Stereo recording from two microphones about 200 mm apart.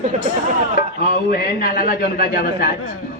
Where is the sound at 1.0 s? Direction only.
50° left (ahead or behind).